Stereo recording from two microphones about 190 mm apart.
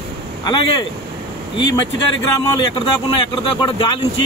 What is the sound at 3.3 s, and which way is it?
Speech, 25° left (ahead or behind).